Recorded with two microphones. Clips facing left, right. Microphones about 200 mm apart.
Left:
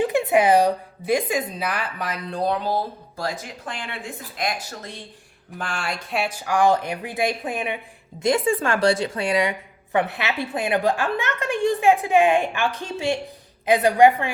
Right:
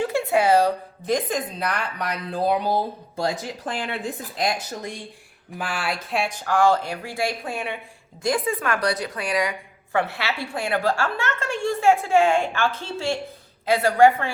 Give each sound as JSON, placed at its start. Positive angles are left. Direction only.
{"t": 0.0, "sound": "speech", "side_deg": 20}
{"t": 3.2, "sound": "speech", "side_deg": -35}
{"t": 4.7, "sound": "a woman's voice", "side_deg": -15}